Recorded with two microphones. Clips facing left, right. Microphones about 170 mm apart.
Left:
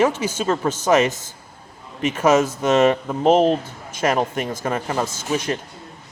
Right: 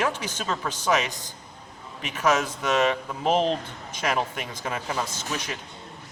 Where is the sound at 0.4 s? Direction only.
45° left (ahead or behind).